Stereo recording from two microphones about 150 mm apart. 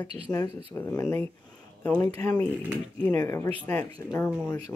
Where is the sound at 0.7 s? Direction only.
15° left (ahead or behind).